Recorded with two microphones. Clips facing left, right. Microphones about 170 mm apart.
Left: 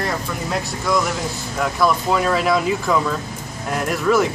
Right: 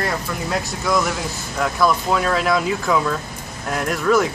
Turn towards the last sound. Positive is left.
turn(degrees=0)  # may be behind; listen again after turning